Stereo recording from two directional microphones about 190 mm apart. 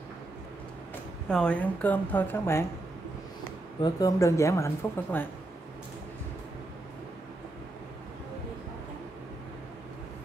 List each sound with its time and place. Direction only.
1.3 s speech: 5° left (ahead or behind)
3.8 s speech: 20° left (ahead or behind)